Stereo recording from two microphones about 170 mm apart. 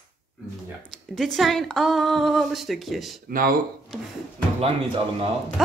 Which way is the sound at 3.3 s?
55° right (ahead or behind).